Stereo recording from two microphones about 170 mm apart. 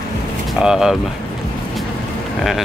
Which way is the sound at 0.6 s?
5° right (ahead or behind).